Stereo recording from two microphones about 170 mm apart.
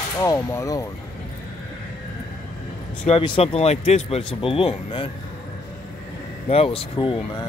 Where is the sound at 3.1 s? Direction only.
35° left (ahead or behind).